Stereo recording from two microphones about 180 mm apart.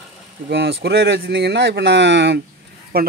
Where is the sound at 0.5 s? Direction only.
65° right (ahead or behind).